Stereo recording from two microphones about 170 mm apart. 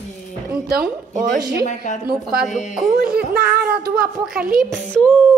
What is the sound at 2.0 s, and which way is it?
Speech, 65° right (ahead or behind).